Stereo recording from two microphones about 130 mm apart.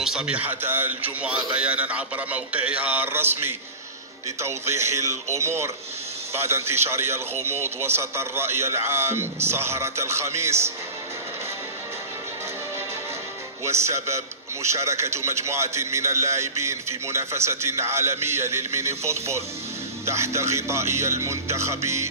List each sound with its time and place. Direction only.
0.0 s a man's voice: 5° right (ahead or behind)
4.4 s a man's voice: 20° right (ahead or behind)
13.7 s a man's voice: 20° right (ahead or behind)